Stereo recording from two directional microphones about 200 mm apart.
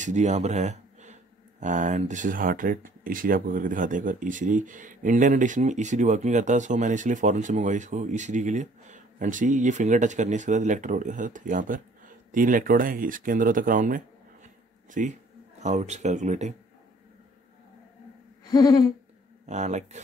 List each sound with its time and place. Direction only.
0.0 s a man's voice: 35° right (ahead or behind)
18.5 s a sound: 20° left (ahead or behind)
19.4 s speech: 35° right (ahead or behind)